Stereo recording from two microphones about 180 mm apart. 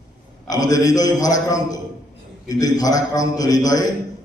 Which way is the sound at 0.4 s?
20° left (ahead or behind).